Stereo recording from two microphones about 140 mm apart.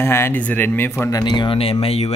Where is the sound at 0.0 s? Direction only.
15° left (ahead or behind).